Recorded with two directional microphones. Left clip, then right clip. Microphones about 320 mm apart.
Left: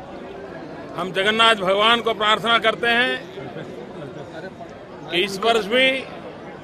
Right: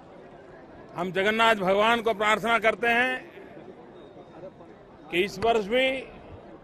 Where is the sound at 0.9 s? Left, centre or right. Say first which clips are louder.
Left 5 dB; right.